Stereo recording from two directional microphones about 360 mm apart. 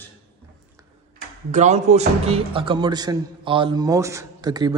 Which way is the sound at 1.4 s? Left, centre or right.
Centre.